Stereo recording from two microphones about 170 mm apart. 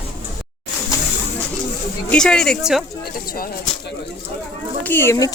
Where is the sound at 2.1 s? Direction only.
5° left (ahead or behind).